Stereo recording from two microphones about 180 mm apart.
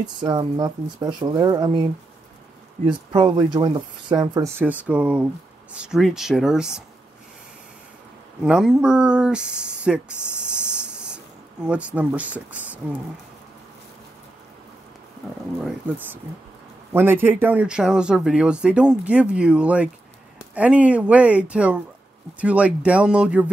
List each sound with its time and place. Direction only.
0.0 s speech: 25° right (ahead or behind)
3.1 s speech: 25° right (ahead or behind); by 6.8 s 5° right (ahead or behind)
8.5 s speech: 5° right (ahead or behind)
10.2 s a sound: 5° right (ahead or behind)
11.6 s speech: 5° right (ahead or behind)
16.9 s speech: 10° right (ahead or behind)